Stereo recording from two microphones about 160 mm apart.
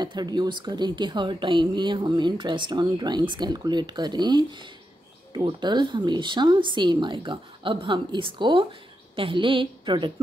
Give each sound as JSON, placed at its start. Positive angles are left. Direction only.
{"t": 0.0, "sound": "a woman's voice", "side_deg": -25}